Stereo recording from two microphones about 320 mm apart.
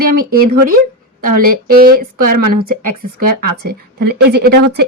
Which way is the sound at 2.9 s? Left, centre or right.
Right.